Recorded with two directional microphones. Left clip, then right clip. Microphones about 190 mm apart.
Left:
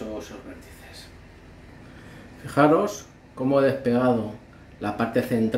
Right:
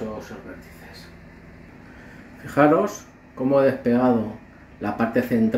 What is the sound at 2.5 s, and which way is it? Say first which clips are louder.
Speech: right 1 dB; 5° left (ahead or behind).